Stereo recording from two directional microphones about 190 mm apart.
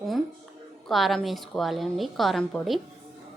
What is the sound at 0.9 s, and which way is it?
A woman's voice, centre (ahead or behind).